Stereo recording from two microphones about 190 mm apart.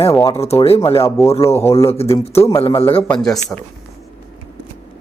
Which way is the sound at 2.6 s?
30° left (ahead or behind).